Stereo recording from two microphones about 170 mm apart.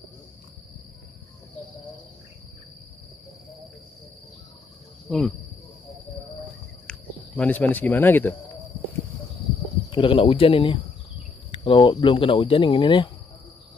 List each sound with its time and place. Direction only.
5.1 s speech: 5° left (ahead or behind)
6.9 s speech: 10° left (ahead or behind)
9.8 s speech: 30° left (ahead or behind)